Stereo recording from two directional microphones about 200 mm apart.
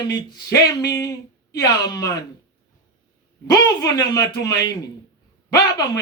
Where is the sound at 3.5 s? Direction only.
20° left (ahead or behind).